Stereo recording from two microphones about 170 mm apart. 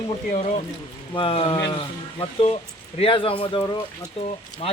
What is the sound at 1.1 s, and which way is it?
Speech, 30° left (ahead or behind).